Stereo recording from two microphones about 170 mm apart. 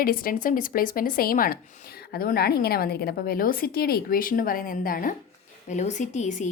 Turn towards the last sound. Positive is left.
turn(degrees=45)  # may be behind; listen again after turning